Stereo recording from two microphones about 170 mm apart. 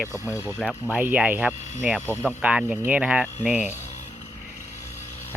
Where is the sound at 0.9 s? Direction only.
10° right (ahead or behind).